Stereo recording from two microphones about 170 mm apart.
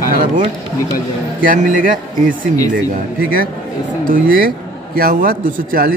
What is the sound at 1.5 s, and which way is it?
Speech, 50° right (ahead or behind).